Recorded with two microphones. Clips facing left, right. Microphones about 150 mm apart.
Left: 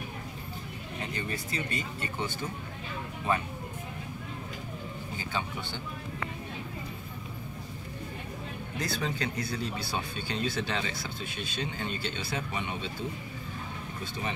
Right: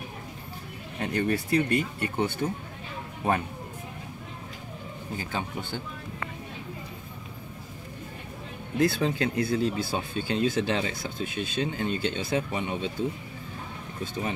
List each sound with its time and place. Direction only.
1.0 s speech: 60° right (ahead or behind)
5.3 s speech: 45° right (ahead or behind)
8.7 s speech: 50° right (ahead or behind)